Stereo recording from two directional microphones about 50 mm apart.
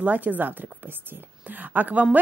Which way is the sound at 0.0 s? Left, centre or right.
Right.